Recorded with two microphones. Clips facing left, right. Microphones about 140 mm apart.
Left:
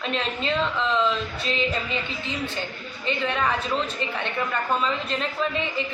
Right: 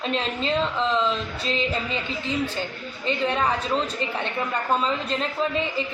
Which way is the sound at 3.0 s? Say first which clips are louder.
Right 2 dB; 35° right (ahead or behind).